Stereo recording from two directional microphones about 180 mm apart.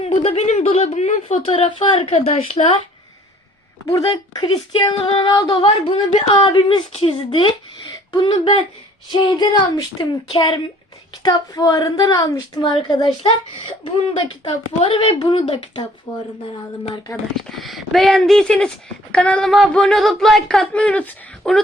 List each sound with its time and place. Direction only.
0.0 s a woman's voice: 30° left (ahead or behind)
3.8 s speech: 20° left (ahead or behind)
14.4 s speech: 30° left (ahead or behind)
17.5 s speech: centre (ahead or behind)